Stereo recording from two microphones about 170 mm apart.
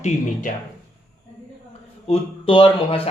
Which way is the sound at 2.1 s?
30° left (ahead or behind).